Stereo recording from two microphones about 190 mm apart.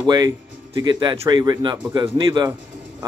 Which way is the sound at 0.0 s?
20° right (ahead or behind).